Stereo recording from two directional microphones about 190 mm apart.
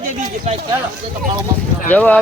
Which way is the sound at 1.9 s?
10° left (ahead or behind).